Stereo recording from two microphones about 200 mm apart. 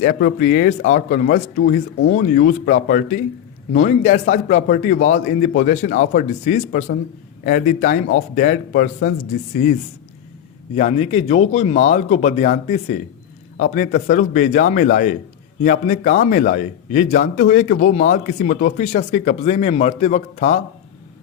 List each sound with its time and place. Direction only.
0.0 s a man's voice: 45° left (ahead or behind)
10.8 s a man's voice: 35° left (ahead or behind)